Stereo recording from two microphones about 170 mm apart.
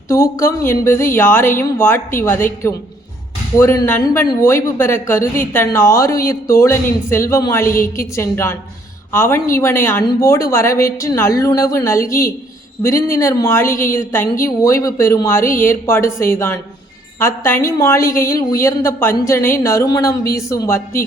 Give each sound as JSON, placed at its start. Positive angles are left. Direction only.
{"t": 0.1, "sound": "a woman's voice", "side_deg": 15}